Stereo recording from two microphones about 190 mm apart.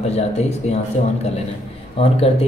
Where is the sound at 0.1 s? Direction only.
35° left (ahead or behind).